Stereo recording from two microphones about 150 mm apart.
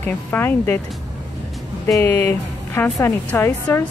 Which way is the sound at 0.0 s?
15° left (ahead or behind).